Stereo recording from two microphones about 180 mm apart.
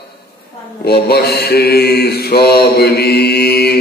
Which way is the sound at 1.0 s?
60° left (ahead or behind).